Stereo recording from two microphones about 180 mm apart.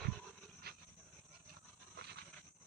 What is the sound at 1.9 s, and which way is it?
Wild animals, 65° right (ahead or behind).